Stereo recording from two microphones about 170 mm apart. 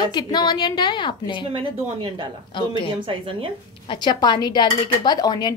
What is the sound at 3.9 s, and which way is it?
A woman's voice, 25° left (ahead or behind).